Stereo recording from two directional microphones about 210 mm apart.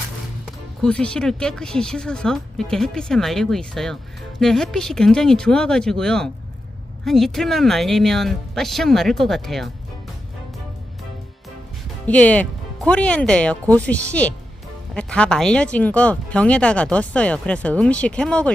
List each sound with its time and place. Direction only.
0.8 s speech: 5° left (ahead or behind)
12.0 s speech: 5° left (ahead or behind)